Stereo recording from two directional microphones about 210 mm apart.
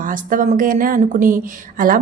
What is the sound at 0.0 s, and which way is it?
A woman's voice, 40° right (ahead or behind).